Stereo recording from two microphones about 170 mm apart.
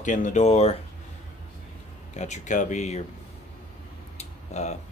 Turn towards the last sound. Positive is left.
turn(degrees=40)  # may be behind; listen again after turning